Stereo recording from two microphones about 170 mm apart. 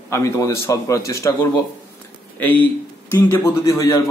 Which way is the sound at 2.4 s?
10° left (ahead or behind).